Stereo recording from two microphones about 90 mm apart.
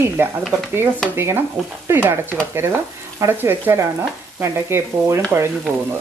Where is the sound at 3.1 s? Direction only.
25° right (ahead or behind).